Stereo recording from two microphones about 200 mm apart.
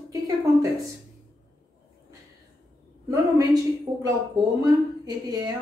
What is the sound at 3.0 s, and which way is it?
A woman's voice, 20° right (ahead or behind).